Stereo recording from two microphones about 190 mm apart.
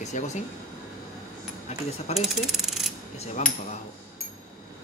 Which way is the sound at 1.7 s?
35° left (ahead or behind).